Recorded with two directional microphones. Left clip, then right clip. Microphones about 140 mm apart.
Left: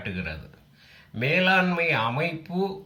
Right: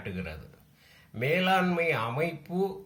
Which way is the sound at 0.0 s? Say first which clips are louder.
Left 5 dB; 20° right (ahead or behind).